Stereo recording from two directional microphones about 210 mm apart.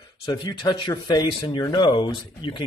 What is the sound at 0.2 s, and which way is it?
Speech, 20° left (ahead or behind).